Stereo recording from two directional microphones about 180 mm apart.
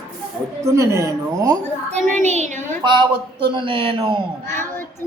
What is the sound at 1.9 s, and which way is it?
Speech, 45° right (ahead or behind).